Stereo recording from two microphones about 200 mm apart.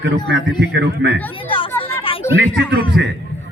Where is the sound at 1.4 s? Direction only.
25° left (ahead or behind).